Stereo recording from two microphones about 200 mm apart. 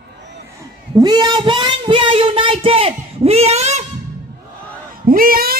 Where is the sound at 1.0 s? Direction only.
20° right (ahead or behind).